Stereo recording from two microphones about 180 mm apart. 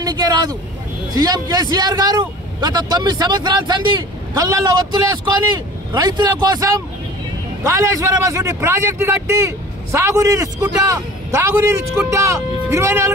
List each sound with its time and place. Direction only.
0.0 s a man's voice: 20° right (ahead or behind)